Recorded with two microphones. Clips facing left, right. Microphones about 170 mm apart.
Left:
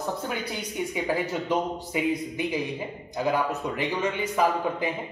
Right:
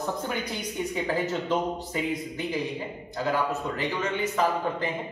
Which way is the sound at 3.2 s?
15° left (ahead or behind).